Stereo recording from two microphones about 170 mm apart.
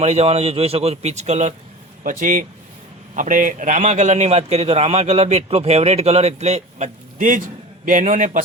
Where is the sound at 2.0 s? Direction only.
55° right (ahead or behind).